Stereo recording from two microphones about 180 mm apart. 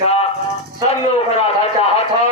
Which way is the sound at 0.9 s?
35° left (ahead or behind).